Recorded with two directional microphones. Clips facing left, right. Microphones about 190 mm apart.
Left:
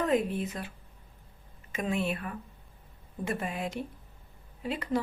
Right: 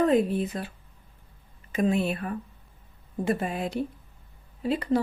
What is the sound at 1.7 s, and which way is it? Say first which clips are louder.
Speech: right 6 dB; 35° right (ahead or behind).